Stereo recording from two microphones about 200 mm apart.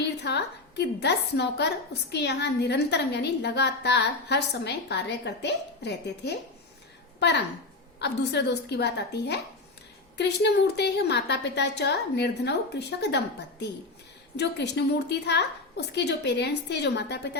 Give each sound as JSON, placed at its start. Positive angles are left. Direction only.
{"t": 0.0, "sound": "a woman's voice", "side_deg": 55}